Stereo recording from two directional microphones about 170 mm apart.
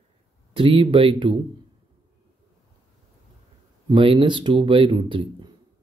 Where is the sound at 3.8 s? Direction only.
30° right (ahead or behind).